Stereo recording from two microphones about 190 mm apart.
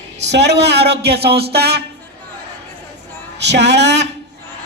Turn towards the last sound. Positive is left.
turn(degrees=-65)  # may be behind; listen again after turning